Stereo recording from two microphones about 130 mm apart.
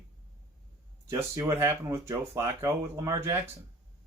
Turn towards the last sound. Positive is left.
turn(degrees=-25)  # may be behind; listen again after turning